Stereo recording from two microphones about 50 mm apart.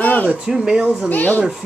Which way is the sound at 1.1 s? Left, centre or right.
Left.